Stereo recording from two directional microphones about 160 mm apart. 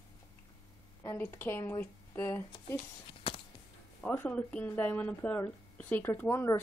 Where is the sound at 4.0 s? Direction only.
10° left (ahead or behind).